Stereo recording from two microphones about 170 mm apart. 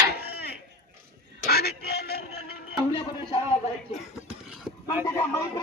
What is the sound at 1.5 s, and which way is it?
Music, 65° left (ahead or behind).